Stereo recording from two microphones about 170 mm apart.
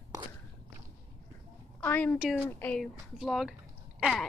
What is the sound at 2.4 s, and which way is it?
Speech, 10° left (ahead or behind).